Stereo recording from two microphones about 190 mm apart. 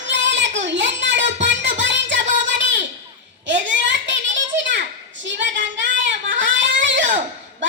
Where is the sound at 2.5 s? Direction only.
70° right (ahead or behind).